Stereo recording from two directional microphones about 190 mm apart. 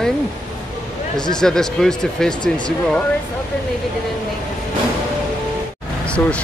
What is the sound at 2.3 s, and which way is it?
Speech, 25° left (ahead or behind).